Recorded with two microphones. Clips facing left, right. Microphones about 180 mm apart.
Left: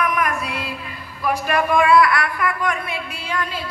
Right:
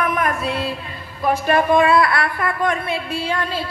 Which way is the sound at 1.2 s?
25° right (ahead or behind).